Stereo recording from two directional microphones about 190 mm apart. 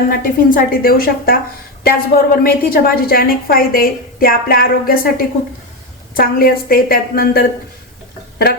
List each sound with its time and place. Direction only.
0.1 s a woman's voice: 50° left (ahead or behind)